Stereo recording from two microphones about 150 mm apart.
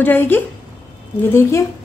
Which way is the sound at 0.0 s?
15° left (ahead or behind).